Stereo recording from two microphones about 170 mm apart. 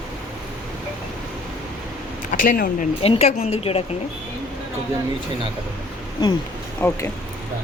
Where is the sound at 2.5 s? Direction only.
50° left (ahead or behind).